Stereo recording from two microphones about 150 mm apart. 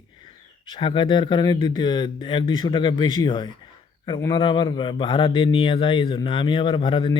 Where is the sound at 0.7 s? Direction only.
35° left (ahead or behind).